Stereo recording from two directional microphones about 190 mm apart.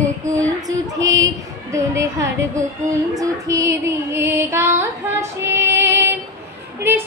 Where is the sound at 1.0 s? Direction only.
90° right.